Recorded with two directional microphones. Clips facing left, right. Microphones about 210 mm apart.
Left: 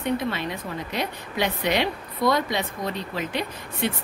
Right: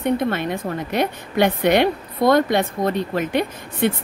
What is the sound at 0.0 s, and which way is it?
A woman's voice, 55° right (ahead or behind).